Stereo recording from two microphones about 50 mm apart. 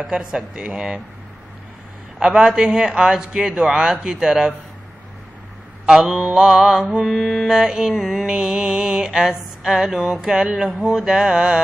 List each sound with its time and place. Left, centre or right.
0.0 s mantra: centre
2.1 s mantra: centre
5.9 s mantra: centre
7.1 s music: centre
7.4 s mantra: centre